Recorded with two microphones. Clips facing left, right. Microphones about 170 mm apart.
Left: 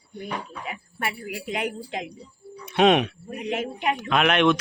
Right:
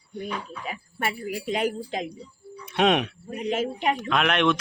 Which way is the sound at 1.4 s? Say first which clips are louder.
Right 3 dB; 35° right (ahead or behind).